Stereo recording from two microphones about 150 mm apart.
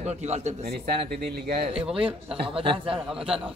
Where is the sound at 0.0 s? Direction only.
45° right (ahead or behind).